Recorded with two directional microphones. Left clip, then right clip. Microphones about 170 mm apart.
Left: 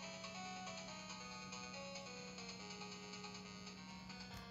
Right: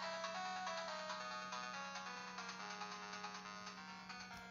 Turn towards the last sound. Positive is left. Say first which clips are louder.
# right 4 dB
turn(degrees=-55)  # may be behind; listen again after turning